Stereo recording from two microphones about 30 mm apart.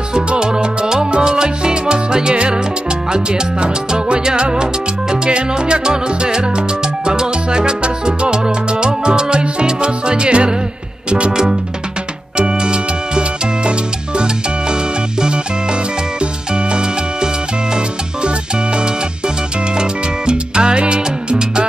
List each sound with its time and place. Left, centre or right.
0.3 s music: right
4.2 s salsa music: right
11.1 s music: right
12.4 s music: right
18.8 s music: right